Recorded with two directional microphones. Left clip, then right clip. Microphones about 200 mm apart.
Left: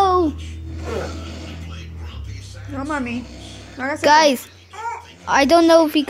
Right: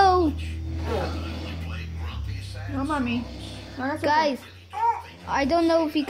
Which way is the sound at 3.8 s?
30° left (ahead or behind).